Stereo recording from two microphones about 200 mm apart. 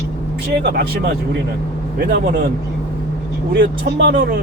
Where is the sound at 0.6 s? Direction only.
55° right (ahead or behind).